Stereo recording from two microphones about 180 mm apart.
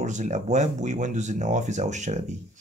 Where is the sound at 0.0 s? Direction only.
40° right (ahead or behind).